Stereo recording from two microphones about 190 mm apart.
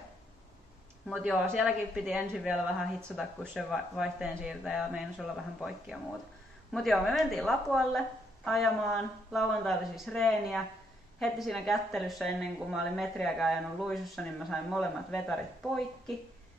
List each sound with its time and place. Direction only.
1.0 s speech: centre (ahead or behind)
6.7 s speech: centre (ahead or behind)